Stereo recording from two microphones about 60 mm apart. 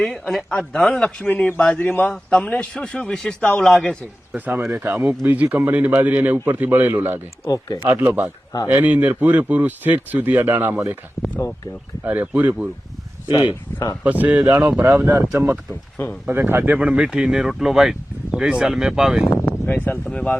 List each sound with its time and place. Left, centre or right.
0.0 s a man's voice: centre
1.2 s speech: left
2.0 s a man's voice: centre
4.4 s a man's voice: right
7.4 s speech: left
7.9 s a man's voice: right
11.2 s speech: left
12.0 s speech: right
14.3 s a man's voice: right
15.0 s speech: right
16.2 s a man's voice: right
16.6 s speech: right
19.5 s speech: left
20.1 s a man's voice: centre